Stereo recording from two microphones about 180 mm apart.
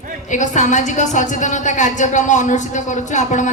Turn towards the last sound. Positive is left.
turn(degrees=45)  # may be behind; listen again after turning